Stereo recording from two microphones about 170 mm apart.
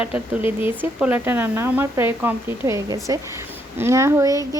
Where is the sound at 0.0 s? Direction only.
5° right (ahead or behind).